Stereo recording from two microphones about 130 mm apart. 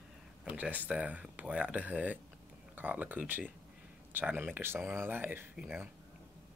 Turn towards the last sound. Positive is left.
turn(degrees=-5)  # may be behind; listen again after turning